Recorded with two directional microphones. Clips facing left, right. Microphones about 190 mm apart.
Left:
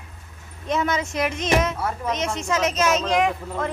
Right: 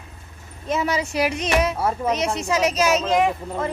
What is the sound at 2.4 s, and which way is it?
Speech, 10° right (ahead or behind).